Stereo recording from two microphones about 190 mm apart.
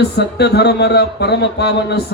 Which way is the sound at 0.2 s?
60° left (ahead or behind).